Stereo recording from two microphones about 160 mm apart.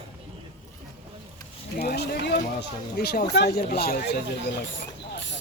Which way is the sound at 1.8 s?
85° left.